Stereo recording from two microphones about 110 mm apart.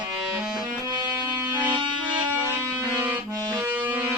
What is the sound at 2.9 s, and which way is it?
Accordion, 15° right (ahead or behind).